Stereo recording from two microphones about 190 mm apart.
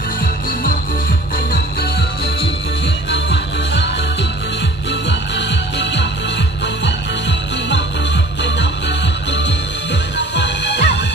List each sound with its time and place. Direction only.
3.1 s music: 65° left (ahead or behind)
8.5 s music: 65° left (ahead or behind)